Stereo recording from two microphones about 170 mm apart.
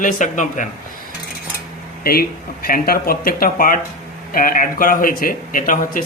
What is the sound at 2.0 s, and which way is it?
Speech, 60° left (ahead or behind).